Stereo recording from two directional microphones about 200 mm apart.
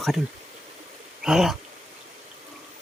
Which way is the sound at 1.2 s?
Centre (ahead or behind).